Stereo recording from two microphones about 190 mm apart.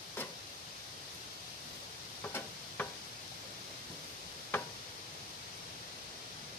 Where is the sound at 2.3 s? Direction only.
10° left (ahead or behind).